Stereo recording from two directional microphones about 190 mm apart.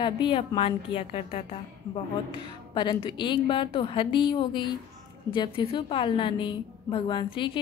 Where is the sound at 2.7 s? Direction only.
25° left (ahead or behind).